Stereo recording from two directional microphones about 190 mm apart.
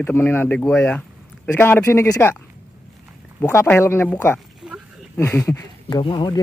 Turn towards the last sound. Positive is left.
turn(degrees=25)  # may be behind; listen again after turning